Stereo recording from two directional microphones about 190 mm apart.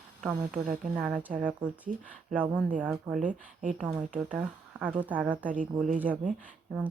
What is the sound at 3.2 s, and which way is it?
Speech, 45° right (ahead or behind).